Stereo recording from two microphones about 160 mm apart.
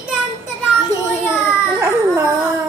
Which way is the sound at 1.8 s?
15° right (ahead or behind).